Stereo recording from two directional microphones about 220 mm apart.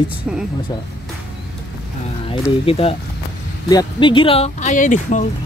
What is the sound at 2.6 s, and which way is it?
Speech, 25° left (ahead or behind).